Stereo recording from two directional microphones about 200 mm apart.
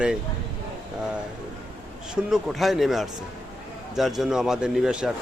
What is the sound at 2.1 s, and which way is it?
A man's voice, 5° right (ahead or behind).